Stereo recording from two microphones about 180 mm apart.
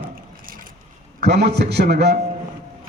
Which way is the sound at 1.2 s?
65° right (ahead or behind).